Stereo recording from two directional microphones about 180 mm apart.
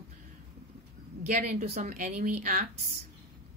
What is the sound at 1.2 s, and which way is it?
Speech, 50° right (ahead or behind).